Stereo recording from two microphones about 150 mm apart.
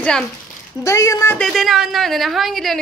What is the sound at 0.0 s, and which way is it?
Speech, 5° left (ahead or behind).